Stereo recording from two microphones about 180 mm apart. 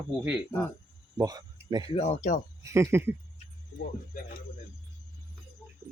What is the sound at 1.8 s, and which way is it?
Speech, 35° left (ahead or behind).